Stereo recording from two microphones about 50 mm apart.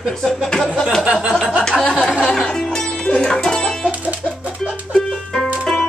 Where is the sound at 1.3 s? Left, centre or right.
Centre.